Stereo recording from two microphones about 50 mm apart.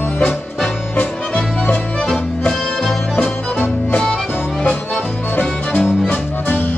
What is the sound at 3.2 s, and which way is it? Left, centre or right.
Music, left.